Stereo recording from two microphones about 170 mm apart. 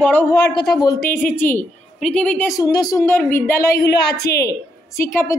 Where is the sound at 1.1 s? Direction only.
10° left (ahead or behind).